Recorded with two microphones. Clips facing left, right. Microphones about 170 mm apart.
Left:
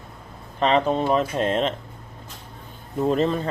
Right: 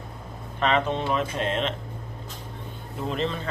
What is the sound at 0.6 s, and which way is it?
Speech, 35° left (ahead or behind).